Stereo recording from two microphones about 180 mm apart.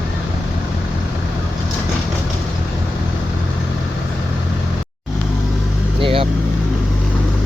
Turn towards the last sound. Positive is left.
turn(degrees=-30)  # may be behind; listen again after turning